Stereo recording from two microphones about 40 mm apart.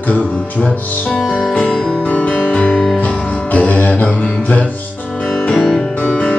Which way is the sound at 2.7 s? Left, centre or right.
Centre.